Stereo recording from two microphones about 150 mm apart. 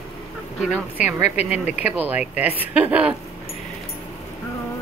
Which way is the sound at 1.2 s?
45° left (ahead or behind).